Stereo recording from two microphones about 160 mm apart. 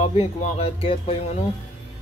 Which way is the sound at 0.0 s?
40° left (ahead or behind).